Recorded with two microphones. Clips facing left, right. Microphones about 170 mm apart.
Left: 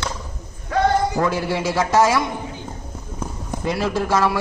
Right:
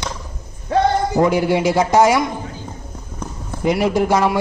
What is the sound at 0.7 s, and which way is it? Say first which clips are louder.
A man's voice: right 2 dB; 20° right (ahead or behind).